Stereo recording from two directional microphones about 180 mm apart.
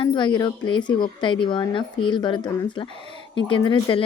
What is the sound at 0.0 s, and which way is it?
Speech, 25° left (ahead or behind).